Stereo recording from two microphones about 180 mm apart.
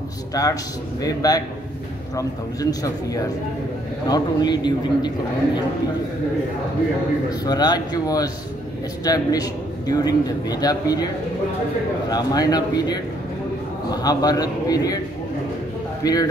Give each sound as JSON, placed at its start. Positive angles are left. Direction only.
{"t": 0.3, "sound": "a man's voice", "side_deg": 20}
{"t": 7.2, "sound": "a man's voice", "side_deg": 20}
{"t": 12.1, "sound": "a man's voice", "side_deg": 20}
{"t": 14.0, "sound": "a man's voice", "side_deg": 20}
{"t": 16.0, "sound": "a man's voice", "side_deg": 20}